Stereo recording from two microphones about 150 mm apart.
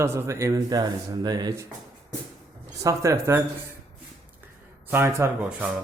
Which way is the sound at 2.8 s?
20° right (ahead or behind).